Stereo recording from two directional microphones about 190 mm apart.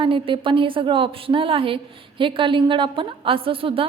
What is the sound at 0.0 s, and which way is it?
A woman's voice, 25° right (ahead or behind).